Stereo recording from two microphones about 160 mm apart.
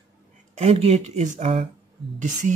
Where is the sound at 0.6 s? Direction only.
40° right (ahead or behind).